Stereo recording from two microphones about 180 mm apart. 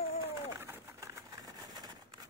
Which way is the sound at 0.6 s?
15° right (ahead or behind).